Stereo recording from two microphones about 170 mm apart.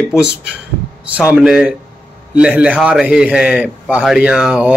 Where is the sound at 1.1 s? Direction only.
5° right (ahead or behind).